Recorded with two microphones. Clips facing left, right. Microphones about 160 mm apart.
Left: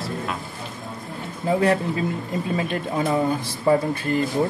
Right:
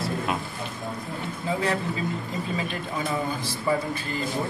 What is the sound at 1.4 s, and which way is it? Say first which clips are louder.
Speech: left 7 dB; 55° left (ahead or behind).